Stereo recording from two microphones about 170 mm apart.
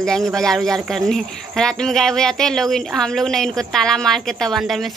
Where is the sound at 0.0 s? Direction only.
5° left (ahead or behind).